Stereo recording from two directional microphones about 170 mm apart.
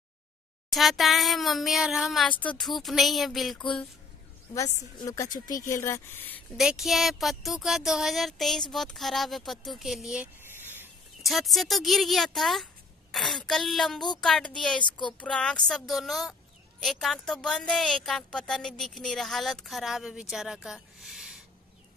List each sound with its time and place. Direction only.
0.7 s a woman's voice: centre (ahead or behind)
4.6 s speech: 20° left (ahead or behind)
6.5 s a woman's voice: centre (ahead or behind)
9.7 s a sound: centre (ahead or behind)
11.2 s a woman's voice: centre (ahead or behind)
14.8 s speech: 30° left (ahead or behind)
15.1 s a woman's voice: 5° left (ahead or behind)